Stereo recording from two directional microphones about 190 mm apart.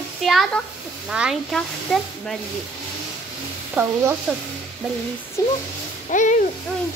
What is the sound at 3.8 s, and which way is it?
Speech, 10° right (ahead or behind).